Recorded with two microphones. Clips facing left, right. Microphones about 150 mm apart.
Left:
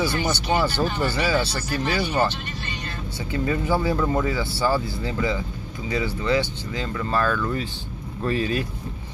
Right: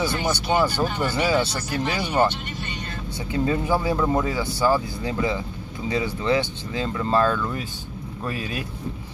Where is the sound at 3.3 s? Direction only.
15° right (ahead or behind).